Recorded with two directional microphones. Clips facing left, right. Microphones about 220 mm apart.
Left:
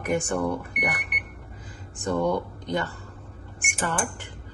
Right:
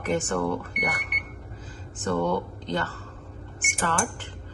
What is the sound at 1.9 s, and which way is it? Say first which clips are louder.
A woman's voice: left 1 dB; 15° left (ahead or behind).